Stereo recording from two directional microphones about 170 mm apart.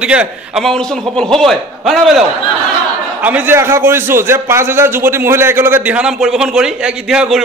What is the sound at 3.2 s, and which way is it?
A man's voice, 10° right (ahead or behind).